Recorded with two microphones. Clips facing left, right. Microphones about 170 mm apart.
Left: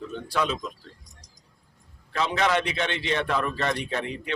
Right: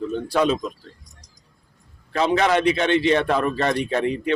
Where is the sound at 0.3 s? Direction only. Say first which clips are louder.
Right 7 dB; 45° right (ahead or behind).